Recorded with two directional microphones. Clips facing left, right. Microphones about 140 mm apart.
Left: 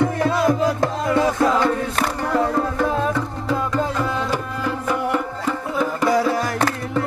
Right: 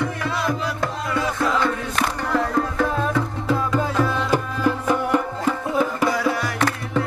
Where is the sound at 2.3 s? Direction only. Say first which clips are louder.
Left 2 dB; 25° left (ahead or behind).